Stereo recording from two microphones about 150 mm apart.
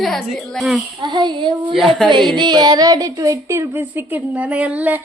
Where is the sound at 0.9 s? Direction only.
30° right (ahead or behind).